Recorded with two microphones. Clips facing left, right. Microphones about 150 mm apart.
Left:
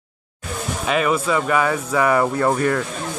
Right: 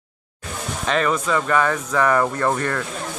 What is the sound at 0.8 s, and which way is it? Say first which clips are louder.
Speech: left 1 dB; 10° left (ahead or behind).